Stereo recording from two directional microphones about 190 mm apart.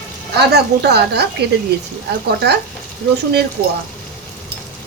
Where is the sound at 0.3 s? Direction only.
60° right (ahead or behind).